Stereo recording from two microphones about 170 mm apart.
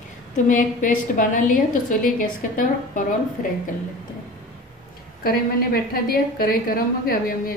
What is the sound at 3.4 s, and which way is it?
Speech, 50° left (ahead or behind).